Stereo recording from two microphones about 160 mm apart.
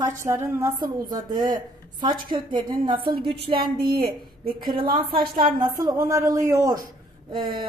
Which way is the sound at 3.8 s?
75° right (ahead or behind).